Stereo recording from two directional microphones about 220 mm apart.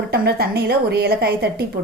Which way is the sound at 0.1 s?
45° right (ahead or behind).